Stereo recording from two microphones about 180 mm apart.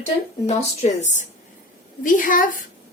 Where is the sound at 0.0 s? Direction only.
40° left (ahead or behind).